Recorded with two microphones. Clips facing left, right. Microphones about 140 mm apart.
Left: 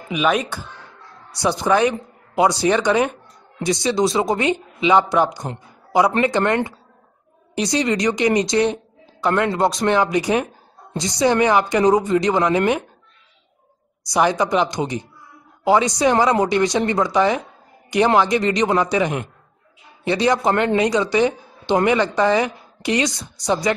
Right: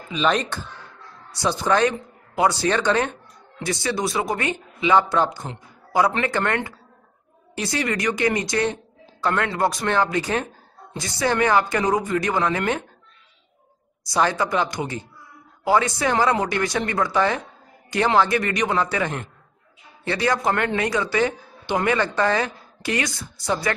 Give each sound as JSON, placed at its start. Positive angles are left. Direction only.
{"t": 0.1, "sound": "a woman's voice", "side_deg": 10}
{"t": 14.1, "sound": "a woman's voice", "side_deg": 15}